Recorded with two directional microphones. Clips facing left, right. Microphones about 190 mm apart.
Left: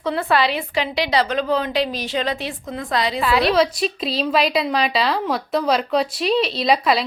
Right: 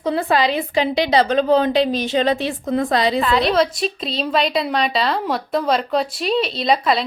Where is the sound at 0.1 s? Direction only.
20° right (ahead or behind).